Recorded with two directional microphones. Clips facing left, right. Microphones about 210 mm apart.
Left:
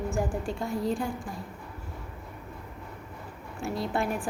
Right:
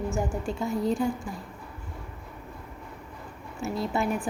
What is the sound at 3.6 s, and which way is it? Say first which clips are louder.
Speech: right 1 dB; centre (ahead or behind).